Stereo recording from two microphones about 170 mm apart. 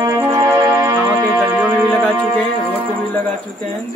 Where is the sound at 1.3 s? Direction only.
Centre (ahead or behind).